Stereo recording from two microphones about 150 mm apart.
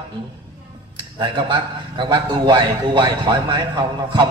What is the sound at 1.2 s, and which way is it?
A man's voice, 30° right (ahead or behind).